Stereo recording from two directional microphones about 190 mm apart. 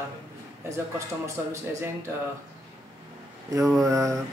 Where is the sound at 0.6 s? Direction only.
15° right (ahead or behind).